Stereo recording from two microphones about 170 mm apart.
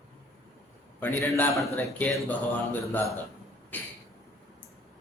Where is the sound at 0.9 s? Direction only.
15° left (ahead or behind).